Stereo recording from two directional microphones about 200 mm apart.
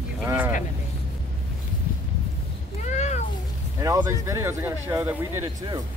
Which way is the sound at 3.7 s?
15° right (ahead or behind).